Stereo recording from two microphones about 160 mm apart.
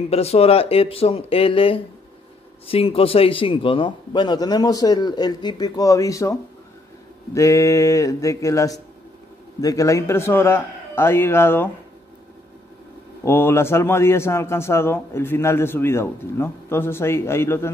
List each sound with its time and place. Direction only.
0.1 s a man's voice: 40° left (ahead or behind); by 6.3 s 20° left (ahead or behind)
7.3 s a man's voice: 20° left (ahead or behind)
13.2 s a man's voice: 15° left (ahead or behind)